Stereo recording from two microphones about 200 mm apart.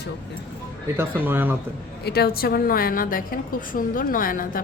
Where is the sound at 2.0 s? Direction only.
50° left (ahead or behind).